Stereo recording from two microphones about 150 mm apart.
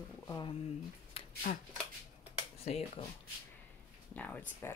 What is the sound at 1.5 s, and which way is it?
Speech, 65° left (ahead or behind).